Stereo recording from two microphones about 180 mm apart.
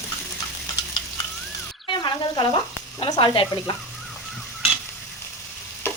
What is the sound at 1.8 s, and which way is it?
Frying, 25° left (ahead or behind).